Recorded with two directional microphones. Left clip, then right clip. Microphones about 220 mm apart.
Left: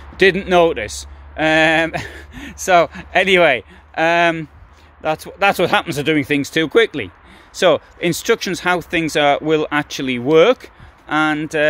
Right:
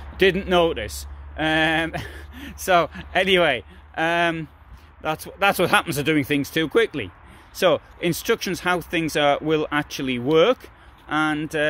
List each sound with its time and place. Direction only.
0.2 s speech: 15° left (ahead or behind)